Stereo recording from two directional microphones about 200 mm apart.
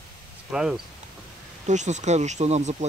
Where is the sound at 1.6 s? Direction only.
35° right (ahead or behind).